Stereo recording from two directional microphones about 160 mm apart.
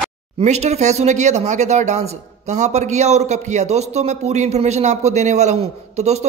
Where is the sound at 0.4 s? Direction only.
45° right (ahead or behind).